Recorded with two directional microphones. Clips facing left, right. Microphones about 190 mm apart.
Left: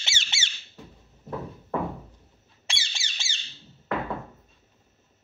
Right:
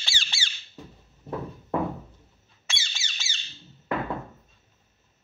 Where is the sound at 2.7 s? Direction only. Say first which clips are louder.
Left 1 dB; 30° left (ahead or behind).